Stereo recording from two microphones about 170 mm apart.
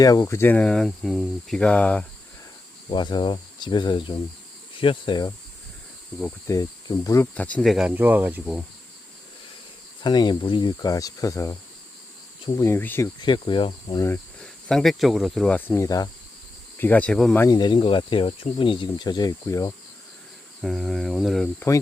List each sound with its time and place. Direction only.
0.0 s speech: 20° left (ahead or behind)
2.9 s speech: 25° left (ahead or behind)
6.5 s speech: 20° left (ahead or behind)
7.3 s speech: 10° left (ahead or behind); by 8.6 s 10° right (ahead or behind)
10.0 s speech: 25° left (ahead or behind)
12.5 s speech: 15° left (ahead or behind)
13.2 s speech: 25° left (ahead or behind)
14.3 s speech: 5° left (ahead or behind)
17.4 s speech: 25° left (ahead or behind)
20.6 s speech: centre (ahead or behind)